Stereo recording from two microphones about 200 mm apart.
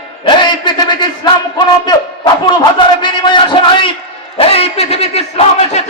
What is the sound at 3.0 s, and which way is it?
A man's voice, 20° left (ahead or behind).